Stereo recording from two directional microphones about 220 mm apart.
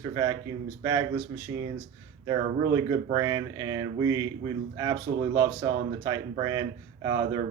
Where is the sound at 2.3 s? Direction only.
20° right (ahead or behind).